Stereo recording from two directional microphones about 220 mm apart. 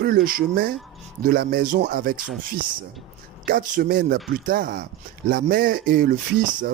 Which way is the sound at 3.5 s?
40° right (ahead or behind).